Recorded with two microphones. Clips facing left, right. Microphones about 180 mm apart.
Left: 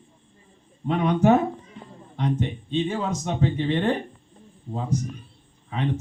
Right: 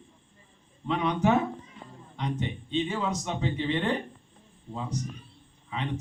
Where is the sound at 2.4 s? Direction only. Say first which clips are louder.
Left 4 dB; 50° left (ahead or behind).